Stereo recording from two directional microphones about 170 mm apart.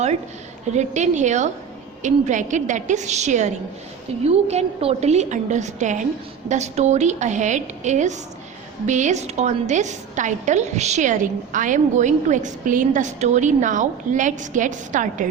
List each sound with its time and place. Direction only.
0.7 s a woman's voice: 45° right (ahead or behind)